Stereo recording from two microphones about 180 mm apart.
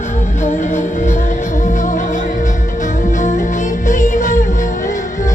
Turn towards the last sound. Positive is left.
turn(degrees=45)  # may be behind; listen again after turning